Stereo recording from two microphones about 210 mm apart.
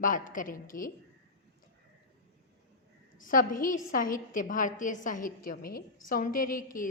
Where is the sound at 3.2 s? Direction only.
40° left (ahead or behind).